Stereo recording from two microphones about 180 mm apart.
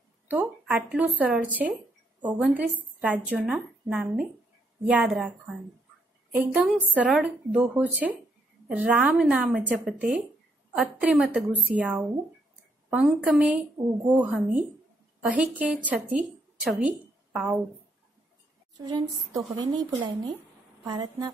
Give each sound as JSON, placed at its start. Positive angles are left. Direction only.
{"t": 0.3, "sound": "a woman's voice", "side_deg": -10}
{"t": 6.3, "sound": "a woman's voice", "side_deg": -5}
{"t": 18.8, "sound": "speech", "side_deg": -20}